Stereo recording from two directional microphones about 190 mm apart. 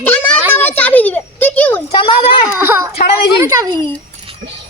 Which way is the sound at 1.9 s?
30° left (ahead or behind).